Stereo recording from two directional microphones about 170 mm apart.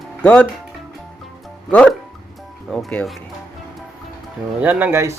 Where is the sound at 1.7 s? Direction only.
5° left (ahead or behind).